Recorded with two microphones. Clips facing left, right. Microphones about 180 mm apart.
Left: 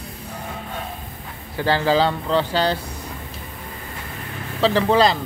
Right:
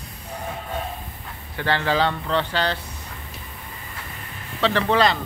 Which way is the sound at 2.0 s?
5° left (ahead or behind).